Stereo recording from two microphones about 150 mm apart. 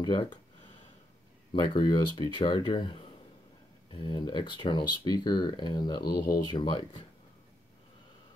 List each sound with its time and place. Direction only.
0.0 s speech: 30° left (ahead or behind)
1.5 s speech: 30° left (ahead or behind)